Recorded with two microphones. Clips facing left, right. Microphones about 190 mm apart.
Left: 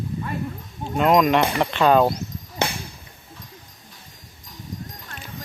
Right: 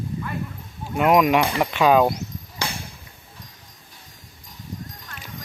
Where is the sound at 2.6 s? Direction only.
20° left (ahead or behind).